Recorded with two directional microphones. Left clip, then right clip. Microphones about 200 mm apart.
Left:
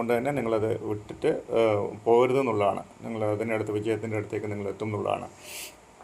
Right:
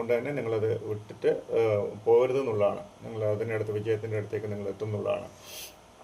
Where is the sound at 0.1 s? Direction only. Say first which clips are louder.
Left 2 dB; 40° left (ahead or behind).